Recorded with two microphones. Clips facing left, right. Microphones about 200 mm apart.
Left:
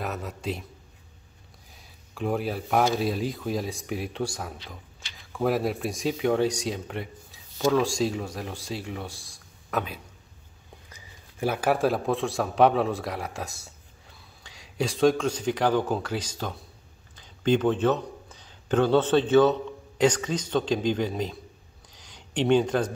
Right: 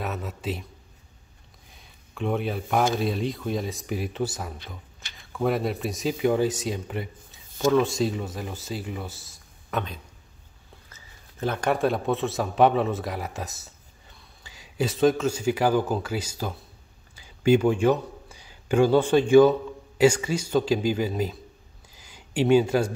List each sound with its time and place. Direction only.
0.0 s speech: centre (ahead or behind)
1.8 s a man's voice: centre (ahead or behind)
21.9 s a sound: 5° right (ahead or behind)